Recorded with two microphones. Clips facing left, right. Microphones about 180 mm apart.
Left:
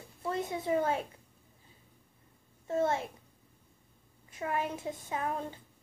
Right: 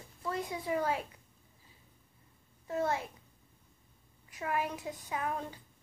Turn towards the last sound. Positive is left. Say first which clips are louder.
# left 1 dB
turn(degrees=30)  # may be behind; listen again after turning